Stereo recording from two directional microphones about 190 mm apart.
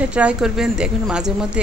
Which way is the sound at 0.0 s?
5° right (ahead or behind).